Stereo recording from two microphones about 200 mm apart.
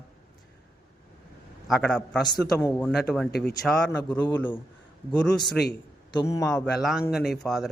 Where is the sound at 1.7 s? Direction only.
5° left (ahead or behind).